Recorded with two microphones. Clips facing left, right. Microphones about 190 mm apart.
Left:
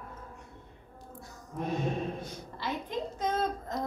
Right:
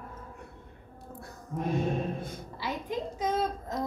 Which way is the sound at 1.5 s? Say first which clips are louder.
Right 2 dB; 50° right (ahead or behind).